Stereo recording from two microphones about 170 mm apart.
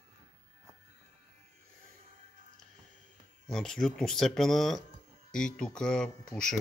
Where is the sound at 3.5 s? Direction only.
5° left (ahead or behind).